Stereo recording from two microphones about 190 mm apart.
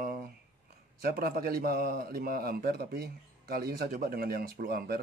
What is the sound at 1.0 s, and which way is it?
A man's voice, 50° right (ahead or behind).